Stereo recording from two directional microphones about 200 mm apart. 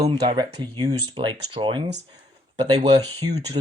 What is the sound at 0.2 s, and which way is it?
Speech, 20° right (ahead or behind).